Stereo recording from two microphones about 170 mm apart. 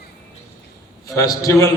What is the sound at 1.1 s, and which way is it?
Speech, 20° left (ahead or behind).